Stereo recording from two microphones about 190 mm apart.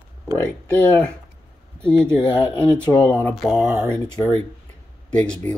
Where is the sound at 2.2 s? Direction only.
20° left (ahead or behind).